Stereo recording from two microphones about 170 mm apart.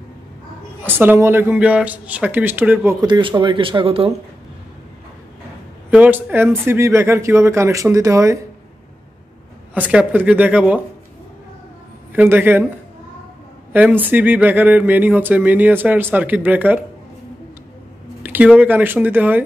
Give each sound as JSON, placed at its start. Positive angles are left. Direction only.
{"t": 0.8, "sound": "speech", "side_deg": -10}
{"t": 3.1, "sound": "speech", "side_deg": -30}
{"t": 5.9, "sound": "speech", "side_deg": -10}
{"t": 9.8, "sound": "speech", "side_deg": -10}
{"t": 12.1, "sound": "speech", "side_deg": -10}
{"t": 13.7, "sound": "speech", "side_deg": -10}
{"t": 18.2, "sound": "speech", "side_deg": -10}